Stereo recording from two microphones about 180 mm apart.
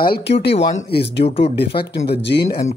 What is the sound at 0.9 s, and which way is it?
Speech, 65° left (ahead or behind).